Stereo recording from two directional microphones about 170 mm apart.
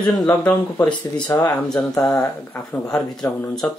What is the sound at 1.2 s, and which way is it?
Speech, 20° left (ahead or behind).